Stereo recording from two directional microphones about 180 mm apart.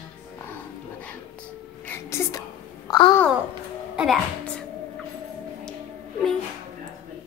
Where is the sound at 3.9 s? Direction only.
Centre (ahead or behind).